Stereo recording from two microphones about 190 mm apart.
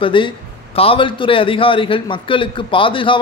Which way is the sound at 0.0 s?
25° left (ahead or behind).